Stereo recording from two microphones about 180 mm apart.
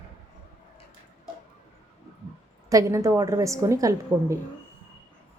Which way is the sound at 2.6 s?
20° right (ahead or behind).